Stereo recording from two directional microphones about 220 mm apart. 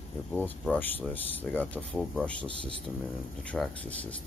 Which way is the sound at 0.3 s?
5° left (ahead or behind).